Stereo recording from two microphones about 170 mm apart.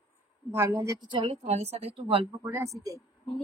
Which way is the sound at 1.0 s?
30° right (ahead or behind).